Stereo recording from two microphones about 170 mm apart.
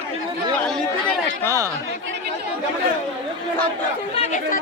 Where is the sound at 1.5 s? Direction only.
20° right (ahead or behind).